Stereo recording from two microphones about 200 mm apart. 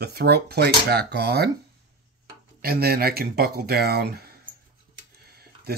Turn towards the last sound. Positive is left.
turn(degrees=-50)  # may be behind; listen again after turning